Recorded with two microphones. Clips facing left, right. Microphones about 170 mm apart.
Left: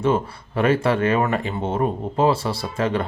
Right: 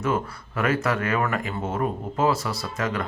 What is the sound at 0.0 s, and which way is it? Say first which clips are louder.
Speech: left 5 dB; 30° left (ahead or behind).